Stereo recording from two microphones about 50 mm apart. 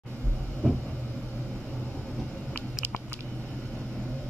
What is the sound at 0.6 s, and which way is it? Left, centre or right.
Vehicle, centre.